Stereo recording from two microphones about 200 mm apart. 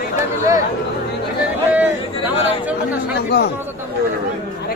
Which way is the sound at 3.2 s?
50° left (ahead or behind).